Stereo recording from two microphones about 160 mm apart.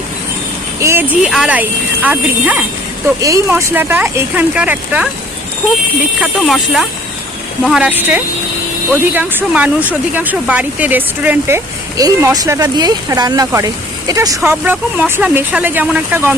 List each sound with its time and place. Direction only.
0.8 s speech: 15° right (ahead or behind)
1.3 s speech: 5° right (ahead or behind)
3.2 s speech: 20° right (ahead or behind)
6.4 s speech: centre (ahead or behind)